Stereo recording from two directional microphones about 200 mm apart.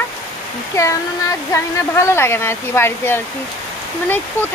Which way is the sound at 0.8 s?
15° left (ahead or behind).